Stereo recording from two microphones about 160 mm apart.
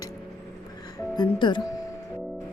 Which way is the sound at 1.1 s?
30° left (ahead or behind).